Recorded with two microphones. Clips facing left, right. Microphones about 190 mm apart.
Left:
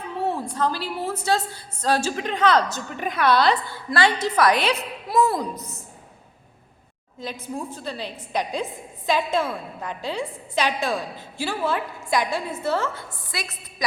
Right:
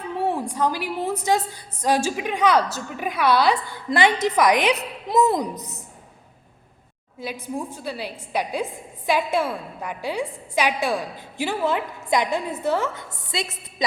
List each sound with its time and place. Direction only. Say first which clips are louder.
0.2 s a woman's voice: right 1 dB; 15° right (ahead or behind)
7.2 s a woman's voice: right 2 dB; 10° right (ahead or behind)